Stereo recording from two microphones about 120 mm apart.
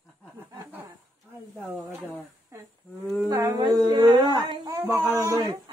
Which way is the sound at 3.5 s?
35° right (ahead or behind).